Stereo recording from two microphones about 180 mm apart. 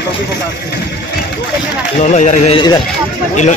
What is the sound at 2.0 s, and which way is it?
Speech, 40° left (ahead or behind).